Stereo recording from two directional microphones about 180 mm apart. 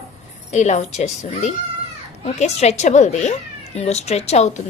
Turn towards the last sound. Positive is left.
turn(degrees=35)  # may be behind; listen again after turning